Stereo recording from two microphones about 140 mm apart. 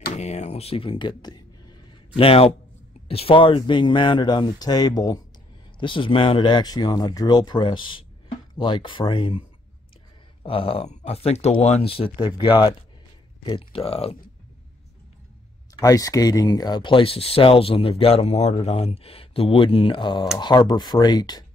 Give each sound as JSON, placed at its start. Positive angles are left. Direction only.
{"t": 0.2, "sound": "a sound", "side_deg": 55}
{"t": 3.1, "sound": "speech", "side_deg": 45}
{"t": 10.4, "sound": "speech", "side_deg": 40}
{"t": 15.8, "sound": "speech", "side_deg": 25}